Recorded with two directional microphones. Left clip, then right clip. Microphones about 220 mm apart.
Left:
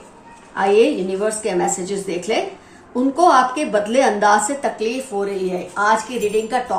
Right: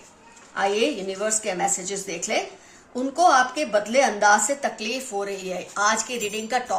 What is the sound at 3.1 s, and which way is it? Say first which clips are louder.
A woman's voice: left 4 dB; 40° right (ahead or behind).